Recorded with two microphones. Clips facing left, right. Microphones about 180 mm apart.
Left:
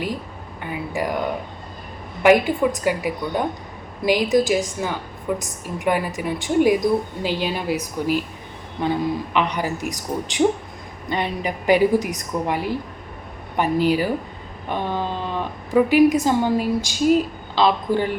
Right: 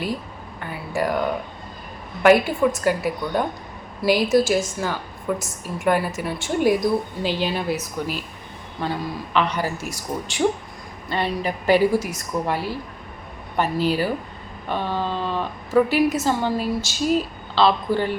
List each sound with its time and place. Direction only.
0.6 s a woman's voice: 15° left (ahead or behind)
2.2 s a woman's voice: 15° left (ahead or behind)